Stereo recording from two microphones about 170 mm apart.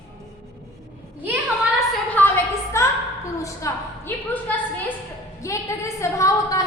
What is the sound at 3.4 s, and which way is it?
Speech, 20° left (ahead or behind).